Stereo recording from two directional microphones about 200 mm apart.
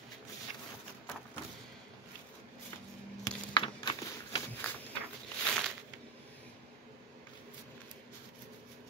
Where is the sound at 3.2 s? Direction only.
25° left (ahead or behind).